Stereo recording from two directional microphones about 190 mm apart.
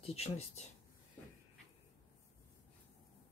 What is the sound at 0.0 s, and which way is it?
Speech, 30° left (ahead or behind).